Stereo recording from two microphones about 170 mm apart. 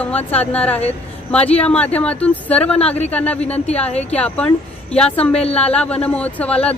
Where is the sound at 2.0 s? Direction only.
10° left (ahead or behind).